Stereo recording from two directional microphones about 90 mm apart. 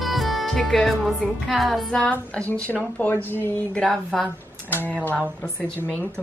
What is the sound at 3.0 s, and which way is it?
Speech, 20° left (ahead or behind).